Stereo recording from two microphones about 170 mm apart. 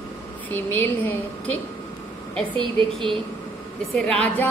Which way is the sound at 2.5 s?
30° right (ahead or behind).